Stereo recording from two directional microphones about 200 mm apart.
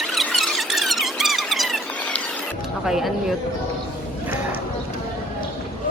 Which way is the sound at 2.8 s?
Centre (ahead or behind).